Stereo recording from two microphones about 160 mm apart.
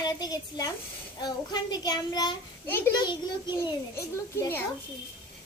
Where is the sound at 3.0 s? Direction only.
30° left (ahead or behind).